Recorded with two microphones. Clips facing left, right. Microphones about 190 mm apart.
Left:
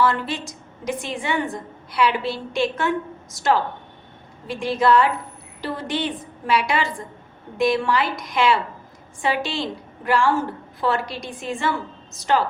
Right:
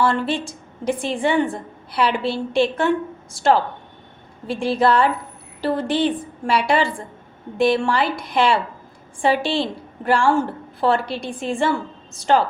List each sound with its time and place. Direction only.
0.0 s a woman's voice: 30° right (ahead or behind)